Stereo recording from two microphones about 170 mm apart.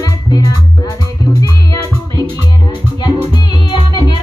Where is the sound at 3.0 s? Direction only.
25° left (ahead or behind).